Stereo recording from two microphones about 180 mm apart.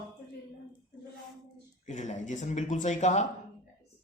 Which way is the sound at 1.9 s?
45° left (ahead or behind).